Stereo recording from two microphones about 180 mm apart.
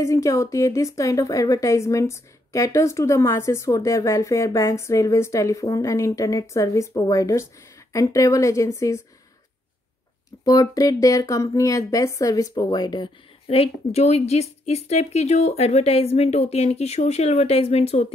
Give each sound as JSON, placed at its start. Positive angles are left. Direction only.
{"t": 0.0, "sound": "a woman's voice", "side_deg": 15}
{"t": 10.4, "sound": "speech", "side_deg": 20}